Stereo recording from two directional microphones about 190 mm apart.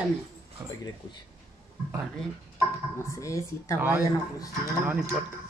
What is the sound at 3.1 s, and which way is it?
Speech, 15° left (ahead or behind).